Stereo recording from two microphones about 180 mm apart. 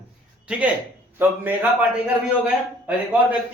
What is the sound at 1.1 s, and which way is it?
A man's voice, 10° right (ahead or behind).